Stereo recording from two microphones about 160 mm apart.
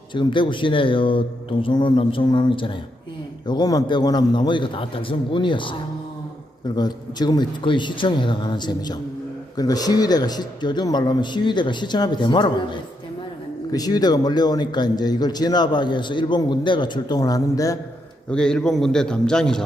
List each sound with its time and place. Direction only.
0.1 s a man's voice: 30° left (ahead or behind)
6.7 s a man's voice: 25° left (ahead or behind)
18.3 s a man's voice: 5° left (ahead or behind)